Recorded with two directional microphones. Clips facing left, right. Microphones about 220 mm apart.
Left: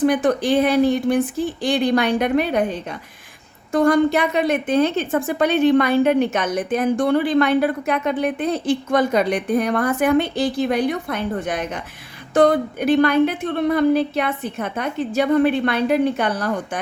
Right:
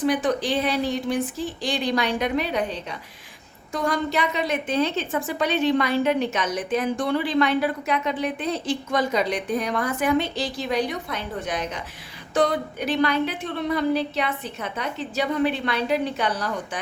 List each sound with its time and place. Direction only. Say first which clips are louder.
0.0 s a woman's voice: left 5 dB; 55° left (ahead or behind)